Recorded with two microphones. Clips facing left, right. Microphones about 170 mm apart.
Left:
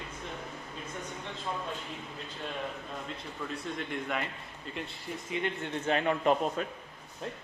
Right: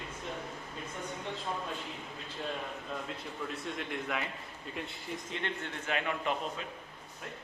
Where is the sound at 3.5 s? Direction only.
Centre (ahead or behind).